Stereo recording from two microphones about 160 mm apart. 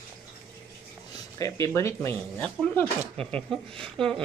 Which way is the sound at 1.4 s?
20° left (ahead or behind).